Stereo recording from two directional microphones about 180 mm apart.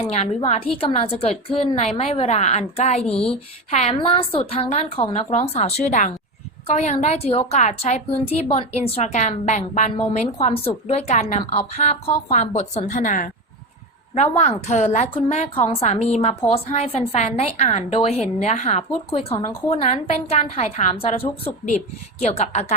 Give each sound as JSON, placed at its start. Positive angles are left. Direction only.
{"t": 0.1, "sound": "a woman's voice", "side_deg": 35}
{"t": 14.2, "sound": "a woman's voice", "side_deg": 35}